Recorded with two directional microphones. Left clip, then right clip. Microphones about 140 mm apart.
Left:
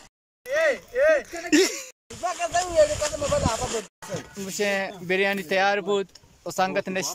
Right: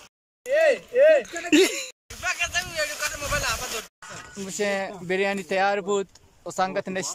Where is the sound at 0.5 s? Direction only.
35° right (ahead or behind).